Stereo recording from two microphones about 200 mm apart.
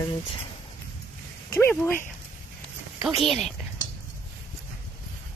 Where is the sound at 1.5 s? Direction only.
10° left (ahead or behind).